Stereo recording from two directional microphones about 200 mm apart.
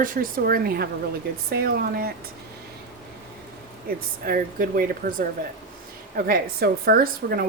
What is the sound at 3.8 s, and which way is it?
Speech, 45° right (ahead or behind).